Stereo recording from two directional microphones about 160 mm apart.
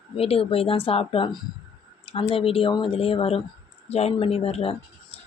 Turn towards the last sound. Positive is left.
turn(degrees=40)  # may be behind; listen again after turning